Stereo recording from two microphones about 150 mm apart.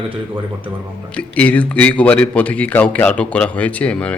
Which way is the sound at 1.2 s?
10° left (ahead or behind).